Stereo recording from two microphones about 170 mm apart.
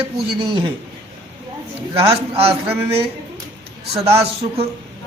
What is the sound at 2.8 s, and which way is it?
Speech, 35° right (ahead or behind).